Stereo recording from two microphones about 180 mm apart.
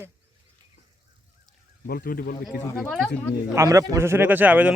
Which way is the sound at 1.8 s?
55° left (ahead or behind).